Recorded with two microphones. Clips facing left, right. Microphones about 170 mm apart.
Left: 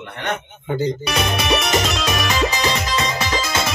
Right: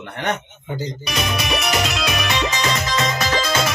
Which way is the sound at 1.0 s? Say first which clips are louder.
Left 3 dB; 50° left (ahead or behind).